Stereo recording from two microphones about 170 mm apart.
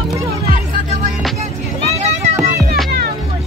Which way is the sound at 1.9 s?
40° right (ahead or behind).